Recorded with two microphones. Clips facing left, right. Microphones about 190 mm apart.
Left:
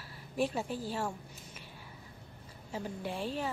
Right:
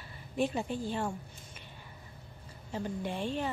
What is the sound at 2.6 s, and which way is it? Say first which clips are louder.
Speech: right 3 dB; 5° left (ahead or behind).